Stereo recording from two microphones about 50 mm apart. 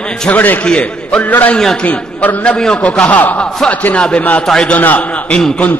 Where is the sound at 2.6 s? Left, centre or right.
Centre.